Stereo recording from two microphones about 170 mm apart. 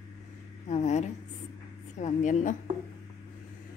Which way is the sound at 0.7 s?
40° left (ahead or behind).